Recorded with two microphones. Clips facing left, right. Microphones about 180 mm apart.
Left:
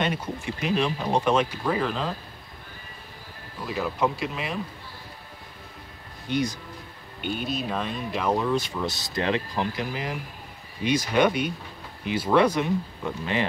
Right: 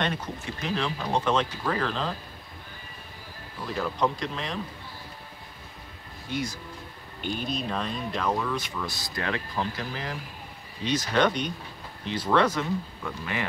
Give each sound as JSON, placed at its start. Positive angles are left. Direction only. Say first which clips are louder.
{"t": 0.0, "sound": "speech", "louder": "left 2 dB", "side_deg": 10}
{"t": 3.6, "sound": "speech", "louder": "left 1 dB", "side_deg": 5}
{"t": 6.2, "sound": "speech", "louder": "left 5 dB", "side_deg": 20}
{"t": 7.2, "sound": "speech", "louder": "left 2 dB", "side_deg": 5}
{"t": 8.4, "sound": "speech", "louder": "left 5 dB", "side_deg": 30}